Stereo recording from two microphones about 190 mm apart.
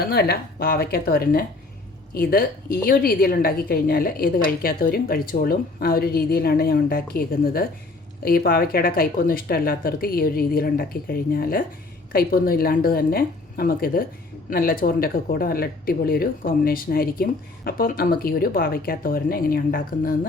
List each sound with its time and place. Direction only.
0.1 s speech: 55° left (ahead or behind)